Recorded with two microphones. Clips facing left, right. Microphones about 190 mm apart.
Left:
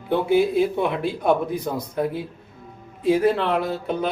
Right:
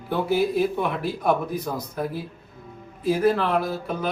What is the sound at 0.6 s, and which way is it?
Speech, 25° left (ahead or behind).